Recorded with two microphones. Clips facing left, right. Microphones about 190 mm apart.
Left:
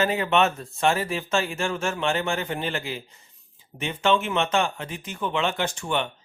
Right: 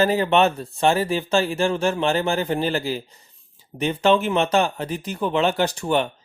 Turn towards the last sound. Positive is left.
turn(degrees=-40)  # may be behind; listen again after turning